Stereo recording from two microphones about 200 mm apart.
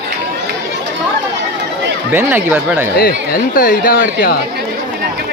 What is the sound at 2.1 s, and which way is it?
Speech, 10° right (ahead or behind).